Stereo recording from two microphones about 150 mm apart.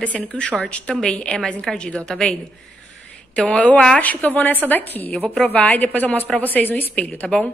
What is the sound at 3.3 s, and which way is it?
A woman's voice, 5° left (ahead or behind).